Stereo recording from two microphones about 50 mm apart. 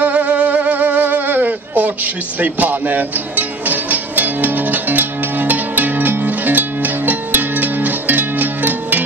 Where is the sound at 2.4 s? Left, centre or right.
Right.